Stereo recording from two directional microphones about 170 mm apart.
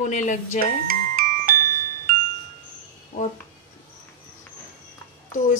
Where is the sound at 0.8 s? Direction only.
55° right (ahead or behind).